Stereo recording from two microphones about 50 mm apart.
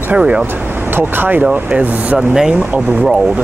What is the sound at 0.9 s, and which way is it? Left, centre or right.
Speech, right.